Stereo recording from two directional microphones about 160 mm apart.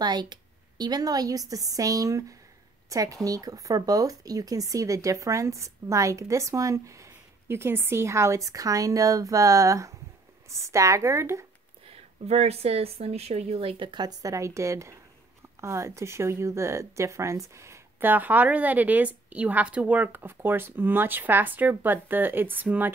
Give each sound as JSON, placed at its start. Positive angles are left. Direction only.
{"t": 0.0, "sound": "a woman's voice", "side_deg": -25}
{"t": 11.9, "sound": "a woman's voice", "side_deg": -40}